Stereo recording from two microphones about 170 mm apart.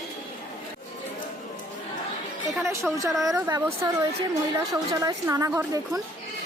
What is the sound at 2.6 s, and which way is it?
A woman's voice, 15° right (ahead or behind).